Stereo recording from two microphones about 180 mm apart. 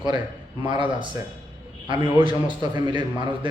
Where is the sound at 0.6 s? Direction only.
25° right (ahead or behind).